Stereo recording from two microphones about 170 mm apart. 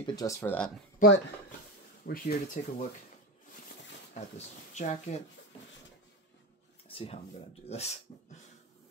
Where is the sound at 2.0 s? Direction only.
65° left (ahead or behind).